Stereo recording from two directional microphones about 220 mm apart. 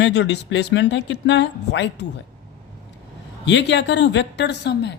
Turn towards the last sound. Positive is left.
turn(degrees=50)  # may be behind; listen again after turning